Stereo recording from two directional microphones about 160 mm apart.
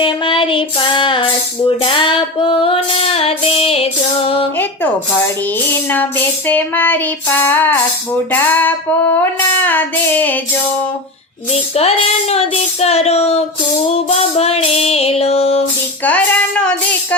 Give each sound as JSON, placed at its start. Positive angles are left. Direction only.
{"t": 0.0, "sound": "music", "side_deg": 30}
{"t": 5.9, "sound": "child singing", "side_deg": 10}
{"t": 11.5, "sound": "child singing", "side_deg": 40}
{"t": 16.0, "sound": "child singing", "side_deg": 5}